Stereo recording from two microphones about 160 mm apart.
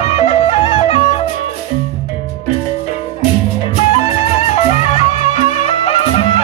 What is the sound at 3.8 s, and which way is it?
Music, 45° left (ahead or behind).